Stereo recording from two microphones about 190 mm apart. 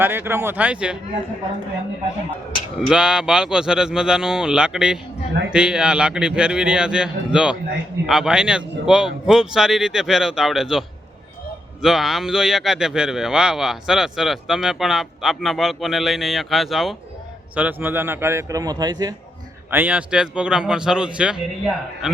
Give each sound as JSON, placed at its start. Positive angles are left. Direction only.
{"t": 0.0, "sound": "a man's voice", "side_deg": -10}
{"t": 2.9, "sound": "a man's voice", "side_deg": -5}
{"t": 19.7, "sound": "a man's voice", "side_deg": -10}